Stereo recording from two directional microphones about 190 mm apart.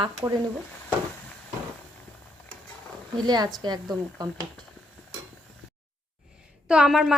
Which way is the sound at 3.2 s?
20° right (ahead or behind).